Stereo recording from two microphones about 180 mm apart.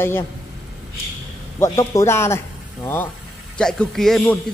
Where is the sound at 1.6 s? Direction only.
15° left (ahead or behind).